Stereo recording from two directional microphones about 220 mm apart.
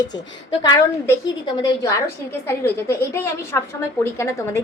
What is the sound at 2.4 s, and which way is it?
A woman's voice, 10° left (ahead or behind).